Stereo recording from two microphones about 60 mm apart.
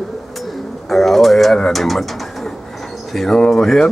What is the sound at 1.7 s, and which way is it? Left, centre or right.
Speech, centre.